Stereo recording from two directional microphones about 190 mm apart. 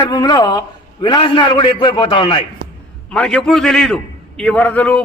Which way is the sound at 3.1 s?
5° left (ahead or behind).